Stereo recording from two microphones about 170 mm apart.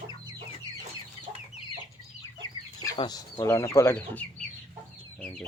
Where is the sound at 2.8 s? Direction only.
25° left (ahead or behind).